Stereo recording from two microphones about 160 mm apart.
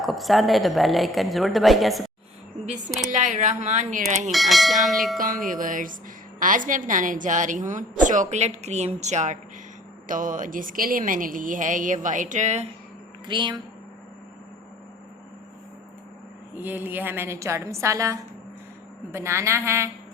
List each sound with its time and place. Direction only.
0.0 s a woman's voice: centre (ahead or behind)
3.1 s a woman's voice: 50° right (ahead or behind)
4.3 s a woman's voice: centre (ahead or behind)
5.1 s a woman's voice: 60° right (ahead or behind)
13.2 s speech: 30° right (ahead or behind)
16.6 s a woman's voice: 10° right (ahead or behind)